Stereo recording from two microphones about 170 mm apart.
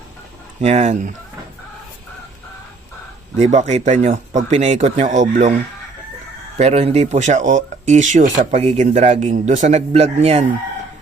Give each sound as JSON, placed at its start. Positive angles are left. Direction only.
{"t": 0.6, "sound": "speech", "side_deg": -40}
{"t": 3.3, "sound": "speech", "side_deg": -45}
{"t": 6.6, "sound": "speech", "side_deg": -40}